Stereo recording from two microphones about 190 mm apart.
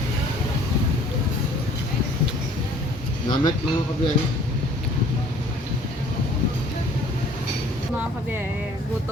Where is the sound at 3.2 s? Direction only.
20° left (ahead or behind).